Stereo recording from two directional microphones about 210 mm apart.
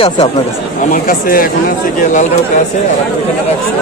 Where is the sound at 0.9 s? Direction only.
40° left (ahead or behind).